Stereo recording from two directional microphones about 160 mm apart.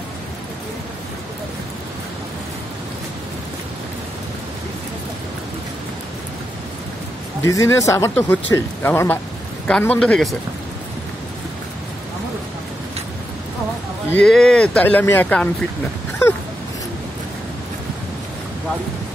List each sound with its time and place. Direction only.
7.4 s a man's voice: 20° left (ahead or behind); by 10.3 s 5° left (ahead or behind)
14.1 s speech: 5° left (ahead or behind)